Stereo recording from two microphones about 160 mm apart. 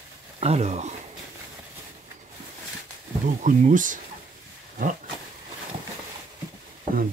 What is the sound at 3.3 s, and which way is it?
Speech, 55° right (ahead or behind).